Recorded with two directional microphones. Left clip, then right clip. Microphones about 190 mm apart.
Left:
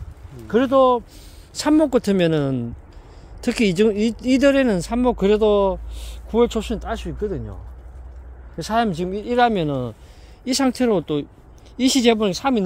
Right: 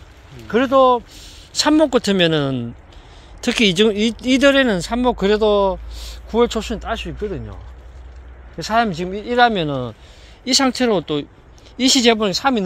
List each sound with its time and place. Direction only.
0.5 s speech: 15° left (ahead or behind)
8.5 s speech: 15° left (ahead or behind)